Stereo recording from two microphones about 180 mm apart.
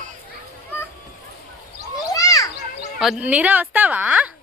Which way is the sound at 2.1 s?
20° left (ahead or behind).